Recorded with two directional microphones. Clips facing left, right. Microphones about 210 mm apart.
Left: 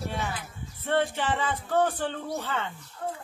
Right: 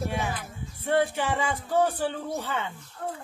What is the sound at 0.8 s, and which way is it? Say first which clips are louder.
Speech: right 2 dB; 15° right (ahead or behind).